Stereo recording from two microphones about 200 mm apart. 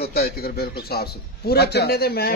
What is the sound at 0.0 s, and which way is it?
A man's voice, 50° left (ahead or behind).